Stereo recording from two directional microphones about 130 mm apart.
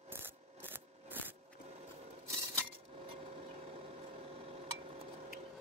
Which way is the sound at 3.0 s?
45° right (ahead or behind).